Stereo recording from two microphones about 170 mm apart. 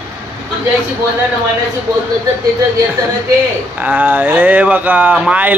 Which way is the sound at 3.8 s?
10° right (ahead or behind).